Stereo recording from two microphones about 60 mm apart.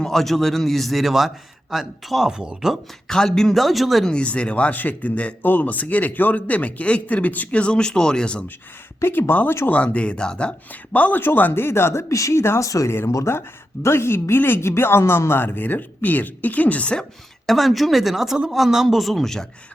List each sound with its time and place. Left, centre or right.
0.0 s a man's voice: centre
3.1 s a man's voice: centre
4.1 s speech: centre
9.0 s speech: left
9.6 s speech: left
10.9 s speech: left
13.3 s speech: left; by 17.1 s centre
17.4 s a man's voice: centre